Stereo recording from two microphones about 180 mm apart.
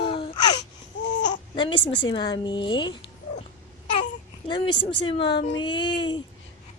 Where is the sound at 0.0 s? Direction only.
30° left (ahead or behind).